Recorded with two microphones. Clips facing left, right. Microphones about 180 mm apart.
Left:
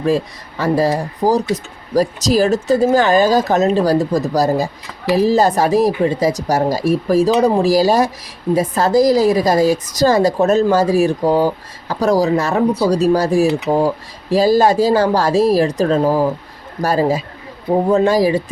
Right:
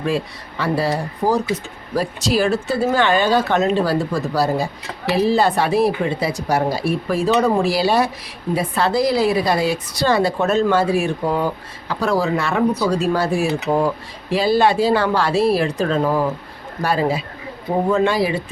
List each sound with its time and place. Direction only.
0.6 s a woman's voice: 40° left (ahead or behind)